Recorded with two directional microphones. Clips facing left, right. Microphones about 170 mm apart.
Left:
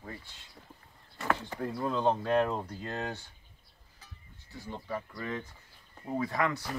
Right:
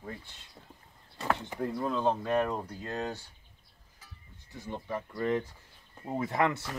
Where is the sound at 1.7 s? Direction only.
Centre (ahead or behind).